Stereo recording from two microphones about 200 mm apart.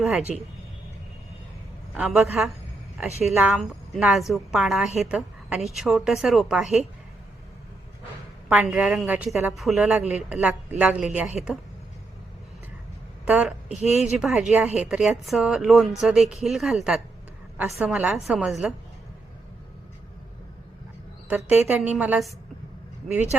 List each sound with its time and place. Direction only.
0.0 s speech: centre (ahead or behind)
1.9 s a man's voice: 5° right (ahead or behind)
8.4 s a woman's voice: 5° right (ahead or behind)
13.2 s a woman's voice: 5° right (ahead or behind)
13.8 s speech: 35° left (ahead or behind)
14.2 s speech: 5° right (ahead or behind)
21.2 s a woman's voice: 5° right (ahead or behind)
23.3 s speech: 5° right (ahead or behind)